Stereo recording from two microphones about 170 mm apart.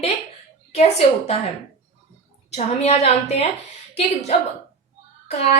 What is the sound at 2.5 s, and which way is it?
Speech, 40° left (ahead or behind).